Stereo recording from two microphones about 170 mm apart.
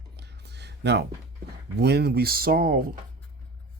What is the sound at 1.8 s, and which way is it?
Speech, 75° right (ahead or behind).